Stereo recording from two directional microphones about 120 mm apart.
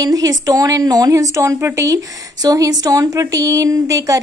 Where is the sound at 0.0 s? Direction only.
30° right (ahead or behind).